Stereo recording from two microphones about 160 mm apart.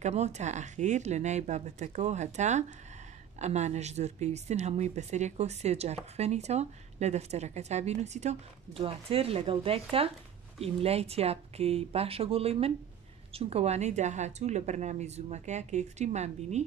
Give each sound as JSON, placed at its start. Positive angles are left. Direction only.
{"t": 0.0, "sound": "speech", "side_deg": -45}